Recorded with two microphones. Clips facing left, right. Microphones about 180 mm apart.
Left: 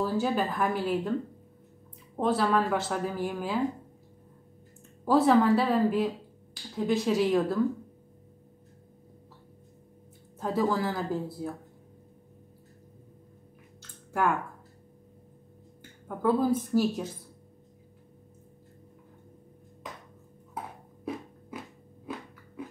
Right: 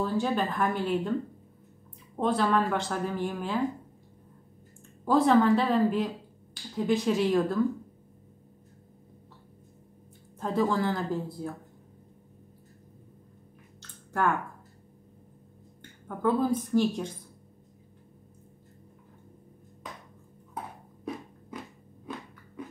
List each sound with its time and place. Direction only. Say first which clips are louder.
0.0 s speech: even; 5° left (ahead or behind)
2.1 s speech: even; 5° left (ahead or behind)
5.0 s speech: even; 5° left (ahead or behind)
10.4 s speech: right 1 dB; 5° left (ahead or behind)
13.7 s squish: left 1 dB; 10° left (ahead or behind)
16.1 s speech: left 1 dB; 5° left (ahead or behind)
21.0 s biting: left 1 dB; 5° left (ahead or behind)